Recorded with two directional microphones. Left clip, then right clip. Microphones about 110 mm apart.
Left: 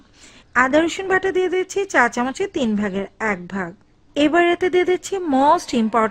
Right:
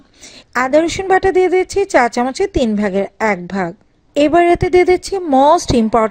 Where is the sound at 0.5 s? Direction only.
25° right (ahead or behind).